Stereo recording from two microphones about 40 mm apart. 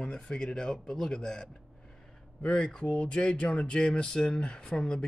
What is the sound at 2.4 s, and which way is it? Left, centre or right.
Speech, left.